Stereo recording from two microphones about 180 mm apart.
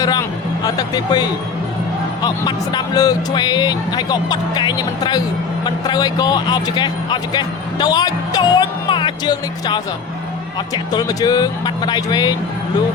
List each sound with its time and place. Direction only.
0.0 s speech: 20° left (ahead or behind)
10.9 s speech: 20° left (ahead or behind)